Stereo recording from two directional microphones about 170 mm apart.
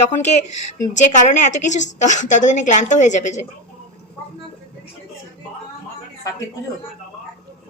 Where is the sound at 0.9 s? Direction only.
45° left (ahead or behind).